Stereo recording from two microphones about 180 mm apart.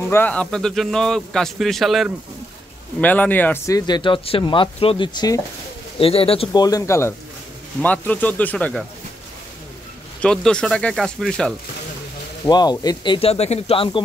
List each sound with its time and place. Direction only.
0.0 s speech: 10° left (ahead or behind)
10.2 s speech: 5° left (ahead or behind)
12.4 s speech: 25° left (ahead or behind)